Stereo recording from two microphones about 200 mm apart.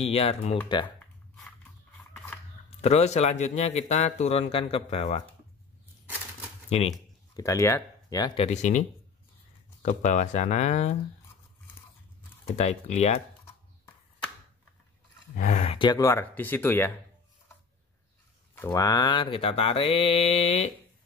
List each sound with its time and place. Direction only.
0.0 s speech: 30° left (ahead or behind)
0.7 s mantra: 25° left (ahead or behind)
0.9 s a sound: 5° left (ahead or behind)
2.8 s speech: 35° left (ahead or behind)
6.7 s speech: 30° left (ahead or behind)
7.3 s speech: 15° left (ahead or behind)
8.4 s speech: 35° left (ahead or behind)
12.5 s speech: 35° left (ahead or behind)
15.3 s speech: 35° left (ahead or behind); by 16.9 s 10° left (ahead or behind)
18.5 s mantra: 15° left (ahead or behind); by 20.7 s 30° left (ahead or behind)